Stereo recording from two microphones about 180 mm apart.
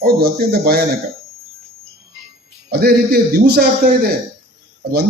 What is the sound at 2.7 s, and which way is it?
A man's voice, 60° right (ahead or behind).